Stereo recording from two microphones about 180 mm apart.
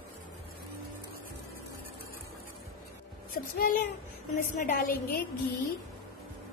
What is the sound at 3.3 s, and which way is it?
A woman's voice, 55° left (ahead or behind).